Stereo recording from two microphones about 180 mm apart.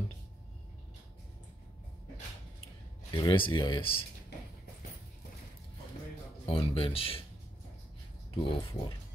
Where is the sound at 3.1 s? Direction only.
30° left (ahead or behind).